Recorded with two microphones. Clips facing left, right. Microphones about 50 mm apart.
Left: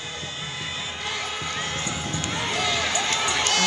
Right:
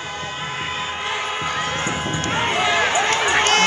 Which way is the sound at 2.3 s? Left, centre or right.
Right.